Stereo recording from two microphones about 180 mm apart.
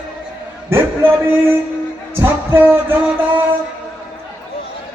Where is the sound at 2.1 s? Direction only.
15° right (ahead or behind).